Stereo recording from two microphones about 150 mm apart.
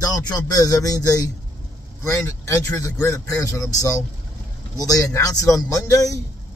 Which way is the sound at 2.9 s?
20° left (ahead or behind).